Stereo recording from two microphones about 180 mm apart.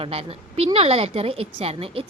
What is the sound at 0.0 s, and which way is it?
A woman's voice, 35° right (ahead or behind).